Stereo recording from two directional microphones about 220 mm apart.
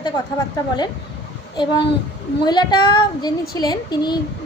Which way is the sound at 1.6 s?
20° left (ahead or behind).